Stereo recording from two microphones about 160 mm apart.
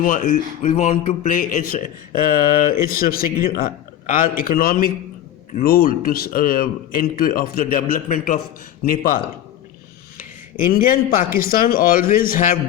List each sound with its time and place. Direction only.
0.0 s speech: 55° left (ahead or behind)
10.6 s speech: 65° left (ahead or behind)